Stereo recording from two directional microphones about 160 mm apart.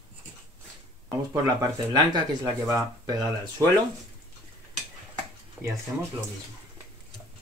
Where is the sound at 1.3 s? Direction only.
20° right (ahead or behind).